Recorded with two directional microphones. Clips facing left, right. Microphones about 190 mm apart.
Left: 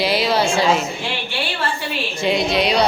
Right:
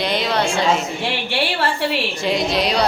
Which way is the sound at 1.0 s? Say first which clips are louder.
Right 3 dB; 65° right (ahead or behind).